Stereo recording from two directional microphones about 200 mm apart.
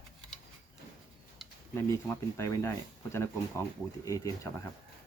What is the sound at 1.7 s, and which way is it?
Speech, 15° left (ahead or behind).